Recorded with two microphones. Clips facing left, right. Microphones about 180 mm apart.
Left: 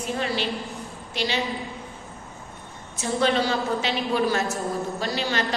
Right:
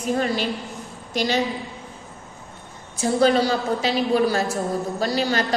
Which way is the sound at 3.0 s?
40° right (ahead or behind).